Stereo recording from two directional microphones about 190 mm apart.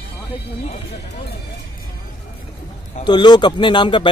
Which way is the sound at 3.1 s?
25° left (ahead or behind).